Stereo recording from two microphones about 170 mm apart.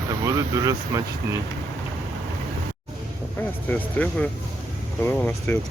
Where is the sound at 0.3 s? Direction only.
20° right (ahead or behind).